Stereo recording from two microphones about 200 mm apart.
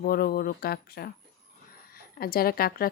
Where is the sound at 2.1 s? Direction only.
50° left (ahead or behind).